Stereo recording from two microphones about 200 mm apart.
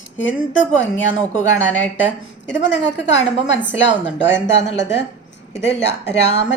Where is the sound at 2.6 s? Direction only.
65° left (ahead or behind).